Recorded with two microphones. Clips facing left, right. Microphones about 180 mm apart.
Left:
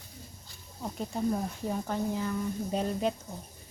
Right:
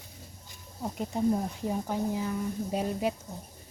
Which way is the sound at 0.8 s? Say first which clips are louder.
Right 3 dB; 15° right (ahead or behind).